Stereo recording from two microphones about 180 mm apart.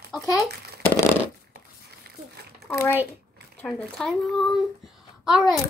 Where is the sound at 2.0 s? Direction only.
55° right (ahead or behind).